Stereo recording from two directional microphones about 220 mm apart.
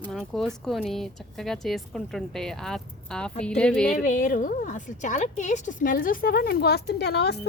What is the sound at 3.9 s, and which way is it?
A woman's voice, 35° left (ahead or behind).